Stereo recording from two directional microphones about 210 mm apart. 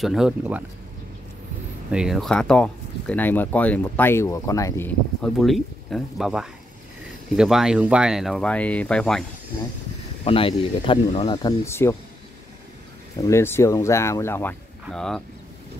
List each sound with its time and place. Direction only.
0.0 s speech: centre (ahead or behind)
1.9 s speech: 5° right (ahead or behind)
10.2 s speech: 25° left (ahead or behind)
13.2 s speech: 10° left (ahead or behind)